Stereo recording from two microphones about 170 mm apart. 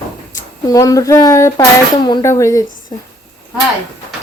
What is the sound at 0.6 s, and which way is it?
Speech, 20° left (ahead or behind).